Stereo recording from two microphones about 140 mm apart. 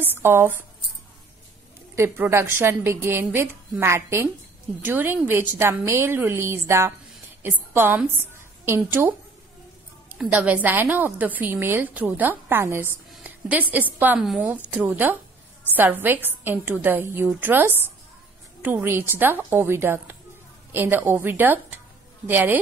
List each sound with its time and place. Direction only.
0.0 s speech: 15° right (ahead or behind)
2.0 s a woman's voice: 20° right (ahead or behind)
13.1 s a sound: 10° right (ahead or behind)
13.9 s a woman's voice: 10° right (ahead or behind)